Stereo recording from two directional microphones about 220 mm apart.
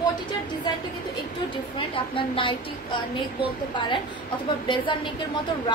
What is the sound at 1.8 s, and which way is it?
A woman's voice, 25° left (ahead or behind).